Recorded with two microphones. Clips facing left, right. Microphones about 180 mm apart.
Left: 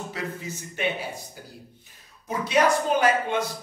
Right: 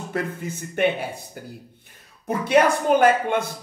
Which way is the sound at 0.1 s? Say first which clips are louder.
Right 5 dB; 55° right (ahead or behind).